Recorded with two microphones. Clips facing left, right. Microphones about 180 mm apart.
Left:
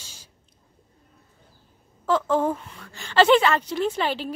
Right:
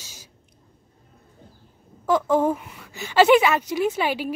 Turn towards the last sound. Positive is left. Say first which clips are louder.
# right 2 dB
turn(degrees=-10)  # may be behind; listen again after turning